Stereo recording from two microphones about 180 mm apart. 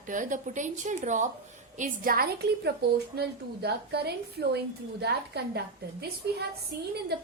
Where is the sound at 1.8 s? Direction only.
55° right (ahead or behind).